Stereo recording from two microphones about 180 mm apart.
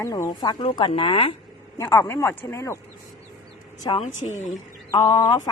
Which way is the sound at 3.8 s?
30° left (ahead or behind).